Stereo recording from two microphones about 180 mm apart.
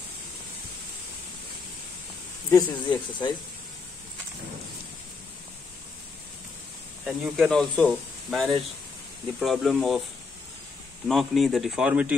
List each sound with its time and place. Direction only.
2.5 s speech: 25° left (ahead or behind)
7.1 s speech: centre (ahead or behind)
11.1 s speech: centre (ahead or behind)